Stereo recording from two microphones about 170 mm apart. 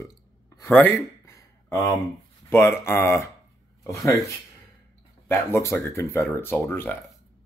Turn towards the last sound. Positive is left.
turn(degrees=10)  # may be behind; listen again after turning